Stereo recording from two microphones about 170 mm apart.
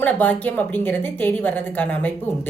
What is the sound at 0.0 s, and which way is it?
A woman's voice, 10° left (ahead or behind).